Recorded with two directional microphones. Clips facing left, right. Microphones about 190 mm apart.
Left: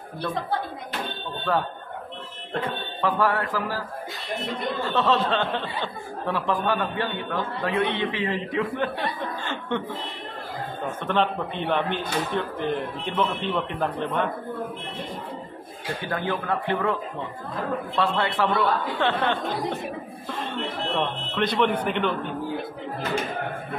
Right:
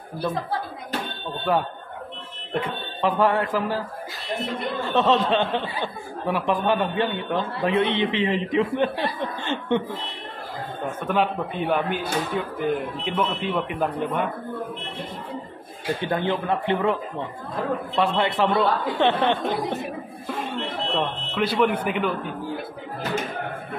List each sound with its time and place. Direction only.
0.2 s speech: centre (ahead or behind)
2.5 s speech: 20° right (ahead or behind)
4.9 s speech: 20° right (ahead or behind)
9.4 s chuckle: 20° right (ahead or behind)
11.1 s a man's voice: 5° right (ahead or behind)
16.0 s a man's voice: 25° right (ahead or behind)
21.0 s a man's voice: 5° right (ahead or behind)